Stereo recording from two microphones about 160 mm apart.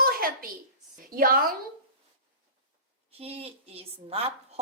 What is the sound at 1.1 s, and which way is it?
Speech, 65° right (ahead or behind).